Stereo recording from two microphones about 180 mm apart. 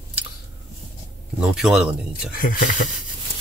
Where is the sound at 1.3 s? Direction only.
5° right (ahead or behind).